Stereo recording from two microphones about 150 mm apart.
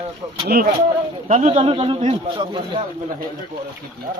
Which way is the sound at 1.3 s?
55° right (ahead or behind).